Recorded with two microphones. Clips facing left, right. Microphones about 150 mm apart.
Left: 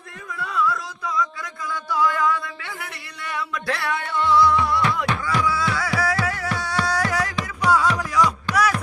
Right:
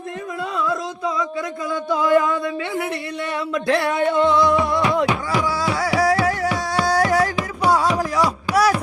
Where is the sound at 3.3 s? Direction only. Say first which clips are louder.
Right 7 dB; 25° right (ahead or behind).